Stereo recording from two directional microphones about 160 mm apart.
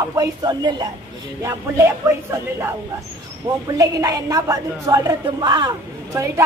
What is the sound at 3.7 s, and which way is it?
A woman's voice, 20° right (ahead or behind).